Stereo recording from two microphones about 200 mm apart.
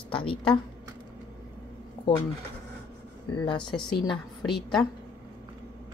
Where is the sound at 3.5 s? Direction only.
25° left (ahead or behind).